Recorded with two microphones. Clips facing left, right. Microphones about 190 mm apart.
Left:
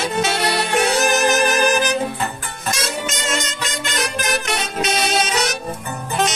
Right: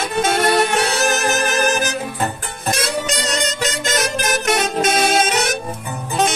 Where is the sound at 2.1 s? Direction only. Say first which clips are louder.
Right 3 dB; 50° right (ahead or behind).